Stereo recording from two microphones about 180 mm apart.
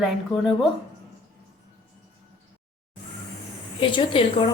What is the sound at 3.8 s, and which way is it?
Speech, 30° left (ahead or behind).